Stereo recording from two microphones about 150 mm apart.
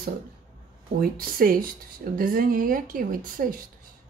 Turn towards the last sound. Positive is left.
turn(degrees=-65)  # may be behind; listen again after turning